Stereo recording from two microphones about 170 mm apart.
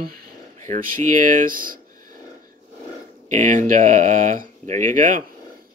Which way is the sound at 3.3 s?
45° right (ahead or behind).